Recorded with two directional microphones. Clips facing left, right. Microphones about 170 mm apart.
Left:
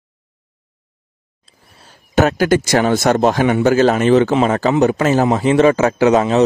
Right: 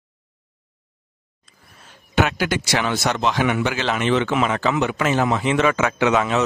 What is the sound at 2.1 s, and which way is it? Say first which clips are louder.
Speech: left 7 dB; 40° left (ahead or behind).